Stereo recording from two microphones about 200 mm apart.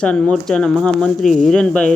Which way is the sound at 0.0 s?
5° left (ahead or behind).